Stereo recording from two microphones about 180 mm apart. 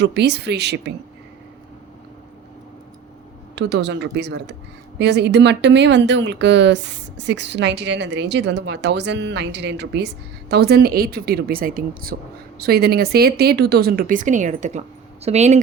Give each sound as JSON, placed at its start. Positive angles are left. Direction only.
{"t": 0.0, "sound": "speech", "side_deg": -70}
{"t": 3.5, "sound": "speech", "side_deg": -70}